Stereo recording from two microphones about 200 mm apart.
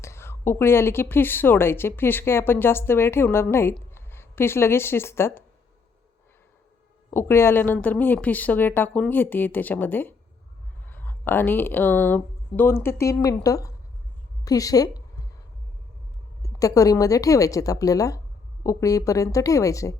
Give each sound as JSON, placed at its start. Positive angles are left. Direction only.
{"t": 0.0, "sound": "a woman's voice", "side_deg": 15}
{"t": 7.1, "sound": "a woman's voice", "side_deg": 10}
{"t": 14.4, "sound": "a sound", "side_deg": 15}
{"t": 16.4, "sound": "a woman's voice", "side_deg": 15}